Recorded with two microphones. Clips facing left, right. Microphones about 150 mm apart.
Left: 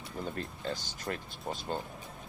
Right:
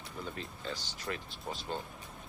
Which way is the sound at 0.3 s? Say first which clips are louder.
Left 4 dB; 45° left (ahead or behind).